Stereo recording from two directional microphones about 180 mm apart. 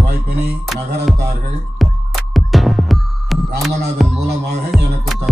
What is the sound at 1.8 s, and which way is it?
Music, centre (ahead or behind).